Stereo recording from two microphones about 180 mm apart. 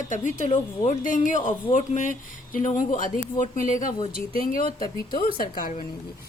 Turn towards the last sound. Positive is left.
turn(degrees=55)  # may be behind; listen again after turning